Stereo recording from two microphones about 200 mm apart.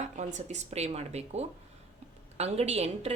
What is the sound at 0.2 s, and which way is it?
Speech, 35° right (ahead or behind).